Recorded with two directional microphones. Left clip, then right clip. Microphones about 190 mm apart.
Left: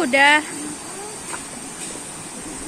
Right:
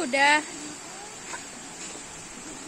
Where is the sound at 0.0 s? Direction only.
5° right (ahead or behind).